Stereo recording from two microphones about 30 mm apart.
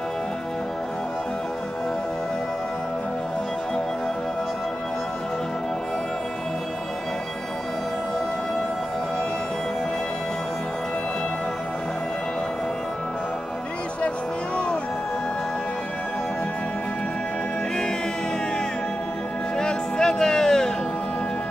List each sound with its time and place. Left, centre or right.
19.5 s music: left